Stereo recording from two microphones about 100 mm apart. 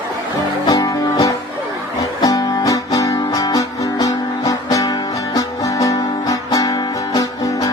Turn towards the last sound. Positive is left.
turn(degrees=35)  # may be behind; listen again after turning